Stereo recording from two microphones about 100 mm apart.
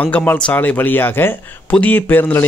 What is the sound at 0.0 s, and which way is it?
A man's voice, 15° left (ahead or behind).